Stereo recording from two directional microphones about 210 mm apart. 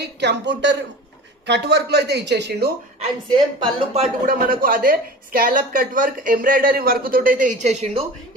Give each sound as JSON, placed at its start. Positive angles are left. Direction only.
{"t": 0.0, "sound": "a woman's voice", "side_deg": -55}
{"t": 3.0, "sound": "a woman's voice", "side_deg": -25}
{"t": 4.6, "sound": "speech", "side_deg": -45}